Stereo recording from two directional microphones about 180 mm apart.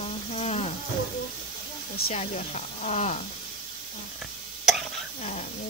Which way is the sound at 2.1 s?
40° left (ahead or behind).